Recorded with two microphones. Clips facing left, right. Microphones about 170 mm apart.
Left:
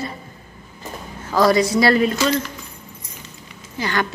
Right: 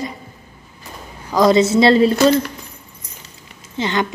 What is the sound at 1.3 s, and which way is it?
Speech, 20° right (ahead or behind).